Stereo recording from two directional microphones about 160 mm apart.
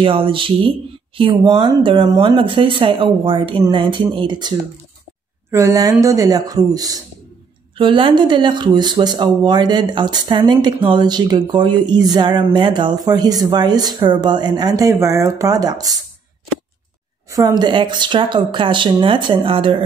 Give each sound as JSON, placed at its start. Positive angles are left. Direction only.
{"t": 0.0, "sound": "speech", "side_deg": -35}
{"t": 17.3, "sound": "speech", "side_deg": -20}